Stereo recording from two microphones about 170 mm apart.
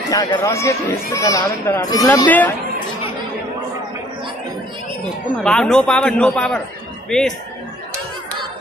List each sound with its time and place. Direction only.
0.1 s speech: 20° left (ahead or behind)
2.2 s speech: 10° left (ahead or behind)
5.4 s a man's voice: 5° left (ahead or behind)